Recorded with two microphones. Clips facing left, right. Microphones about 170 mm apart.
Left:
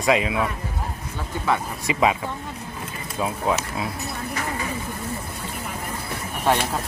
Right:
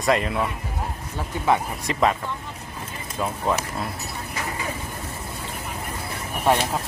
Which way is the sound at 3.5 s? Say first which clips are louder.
Even; 5° left (ahead or behind).